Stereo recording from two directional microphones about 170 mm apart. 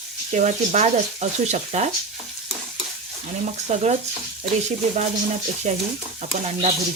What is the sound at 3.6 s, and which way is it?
Speech, 40° right (ahead or behind).